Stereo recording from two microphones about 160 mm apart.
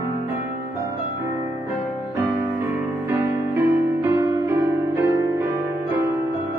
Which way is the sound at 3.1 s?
15° right (ahead or behind).